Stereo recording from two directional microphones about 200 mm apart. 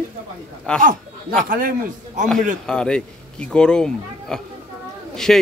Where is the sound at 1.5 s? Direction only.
45° right (ahead or behind).